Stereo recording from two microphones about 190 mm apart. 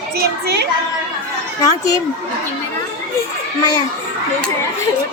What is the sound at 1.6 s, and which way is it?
Speech, 15° left (ahead or behind).